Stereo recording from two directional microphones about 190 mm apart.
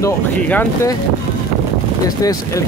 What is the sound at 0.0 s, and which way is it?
Speech, 15° left (ahead or behind).